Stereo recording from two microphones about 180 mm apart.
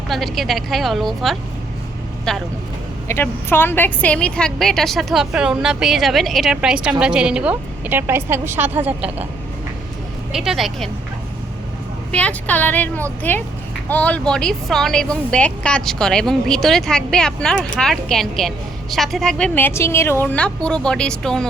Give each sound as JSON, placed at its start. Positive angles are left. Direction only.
{"t": 0.1, "sound": "a woman's voice", "side_deg": 0}
{"t": 3.1, "sound": "a woman's voice", "side_deg": 15}
{"t": 10.3, "sound": "a woman's voice", "side_deg": -5}
{"t": 12.1, "sound": "a woman's voice", "side_deg": 5}